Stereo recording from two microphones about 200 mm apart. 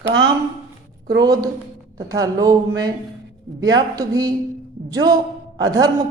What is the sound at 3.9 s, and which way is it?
A man's voice, 20° right (ahead or behind).